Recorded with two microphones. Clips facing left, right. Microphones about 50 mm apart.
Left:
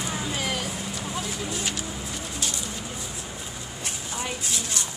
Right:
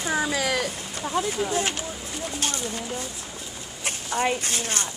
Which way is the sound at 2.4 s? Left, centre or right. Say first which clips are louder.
Right 4 dB; right.